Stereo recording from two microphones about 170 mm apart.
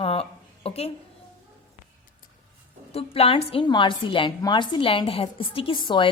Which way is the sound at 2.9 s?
35° left (ahead or behind).